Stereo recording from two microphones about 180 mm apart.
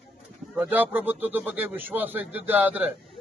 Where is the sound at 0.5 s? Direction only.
10° right (ahead or behind).